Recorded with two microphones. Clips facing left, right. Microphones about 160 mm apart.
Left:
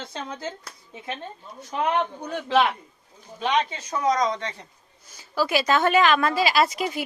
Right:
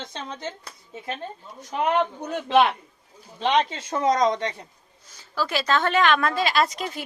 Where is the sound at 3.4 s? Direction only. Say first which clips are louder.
Right 2 dB; 25° right (ahead or behind).